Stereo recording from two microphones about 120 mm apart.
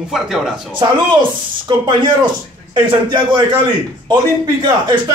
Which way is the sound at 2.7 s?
40° right (ahead or behind).